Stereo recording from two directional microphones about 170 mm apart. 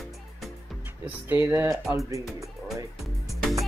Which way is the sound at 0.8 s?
10° right (ahead or behind).